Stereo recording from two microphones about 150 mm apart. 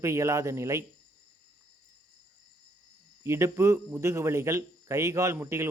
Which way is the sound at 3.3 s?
20° right (ahead or behind).